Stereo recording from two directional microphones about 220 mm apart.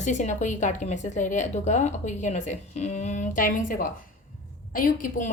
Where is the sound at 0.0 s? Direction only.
35° left (ahead or behind).